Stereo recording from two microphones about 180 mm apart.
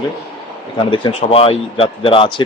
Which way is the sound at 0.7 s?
25° left (ahead or behind).